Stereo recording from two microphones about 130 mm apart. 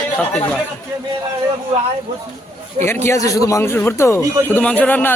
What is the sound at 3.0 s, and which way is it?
A man's voice, 25° left (ahead or behind).